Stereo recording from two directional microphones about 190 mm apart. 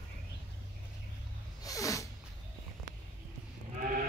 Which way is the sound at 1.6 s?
15° left (ahead or behind).